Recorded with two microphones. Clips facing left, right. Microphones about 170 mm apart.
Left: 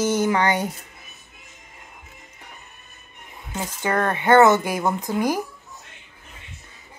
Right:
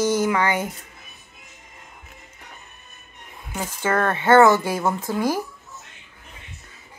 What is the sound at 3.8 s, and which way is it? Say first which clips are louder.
Speech: right 1 dB; 15° left (ahead or behind).